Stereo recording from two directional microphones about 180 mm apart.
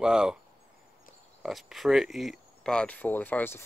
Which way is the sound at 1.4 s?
Centre (ahead or behind).